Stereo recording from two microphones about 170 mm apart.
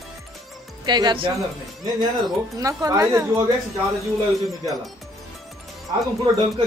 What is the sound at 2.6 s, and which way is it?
Speech, 20° right (ahead or behind).